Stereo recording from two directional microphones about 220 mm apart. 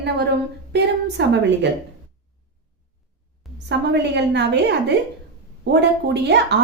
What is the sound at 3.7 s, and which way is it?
A woman's voice, 50° right (ahead or behind).